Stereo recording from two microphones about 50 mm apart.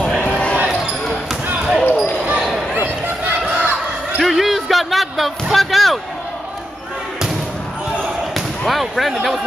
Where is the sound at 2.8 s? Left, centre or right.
Right.